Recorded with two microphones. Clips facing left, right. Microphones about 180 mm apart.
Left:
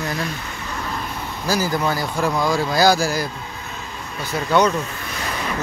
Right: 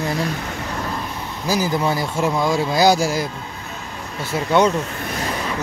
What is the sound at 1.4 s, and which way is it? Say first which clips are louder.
Speech: right 1 dB; 20° right (ahead or behind).